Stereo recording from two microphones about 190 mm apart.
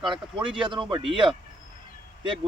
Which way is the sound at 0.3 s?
25° right (ahead or behind).